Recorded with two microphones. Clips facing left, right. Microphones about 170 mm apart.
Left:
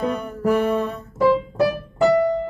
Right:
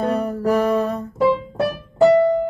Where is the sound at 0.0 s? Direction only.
35° right (ahead or behind).